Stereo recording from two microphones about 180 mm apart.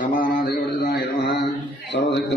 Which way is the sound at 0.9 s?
60° left (ahead or behind).